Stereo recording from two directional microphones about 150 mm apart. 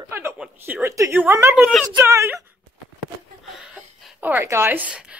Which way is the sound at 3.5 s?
5° right (ahead or behind).